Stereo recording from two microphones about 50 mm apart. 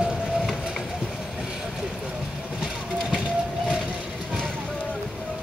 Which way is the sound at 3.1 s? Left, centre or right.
Centre.